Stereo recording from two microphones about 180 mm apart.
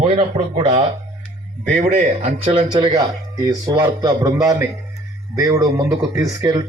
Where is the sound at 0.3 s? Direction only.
30° right (ahead or behind).